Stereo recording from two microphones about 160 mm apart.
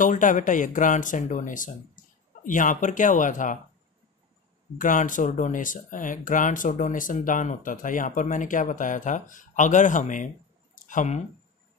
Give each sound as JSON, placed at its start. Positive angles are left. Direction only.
{"t": 0.0, "sound": "speech", "side_deg": 55}
{"t": 4.7, "sound": "speech", "side_deg": 55}